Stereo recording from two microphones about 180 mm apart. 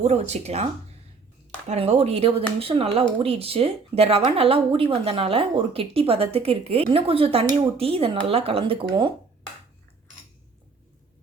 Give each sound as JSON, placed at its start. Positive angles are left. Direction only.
{"t": 0.0, "sound": "speech", "side_deg": -35}